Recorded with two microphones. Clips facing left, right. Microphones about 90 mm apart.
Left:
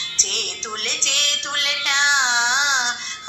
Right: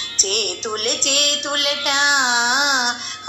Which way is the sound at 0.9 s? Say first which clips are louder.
Right 6 dB; 50° right (ahead or behind).